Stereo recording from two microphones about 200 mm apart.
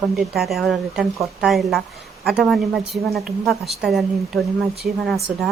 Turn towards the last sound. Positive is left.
turn(degrees=0)  # may be behind; listen again after turning